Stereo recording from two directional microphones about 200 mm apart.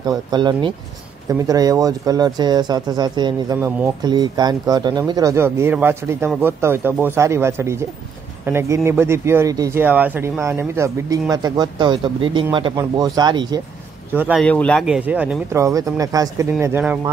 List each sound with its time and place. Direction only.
0.0 s speech: 20° right (ahead or behind)
14.1 s speech: 5° right (ahead or behind)
14.4 s speech: 5° left (ahead or behind)